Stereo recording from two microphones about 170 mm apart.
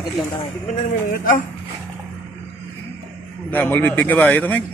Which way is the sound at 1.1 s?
55° left (ahead or behind).